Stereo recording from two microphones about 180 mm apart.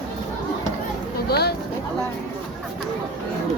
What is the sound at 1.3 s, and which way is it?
Speech, 65° left (ahead or behind).